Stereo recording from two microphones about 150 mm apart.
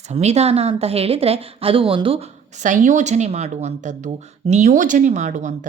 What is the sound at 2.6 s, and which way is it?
A woman's voice, 55° right (ahead or behind).